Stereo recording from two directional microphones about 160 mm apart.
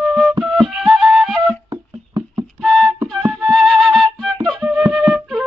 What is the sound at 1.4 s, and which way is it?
Wind instrument, 25° right (ahead or behind).